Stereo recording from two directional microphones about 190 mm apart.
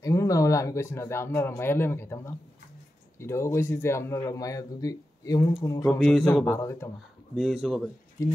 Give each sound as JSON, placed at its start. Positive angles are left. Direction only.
{"t": 0.0, "sound": "a man's voice", "side_deg": 15}
{"t": 5.9, "sound": "a man's voice", "side_deg": 0}
{"t": 7.3, "sound": "speech", "side_deg": 0}
{"t": 8.2, "sound": "a man's voice", "side_deg": 15}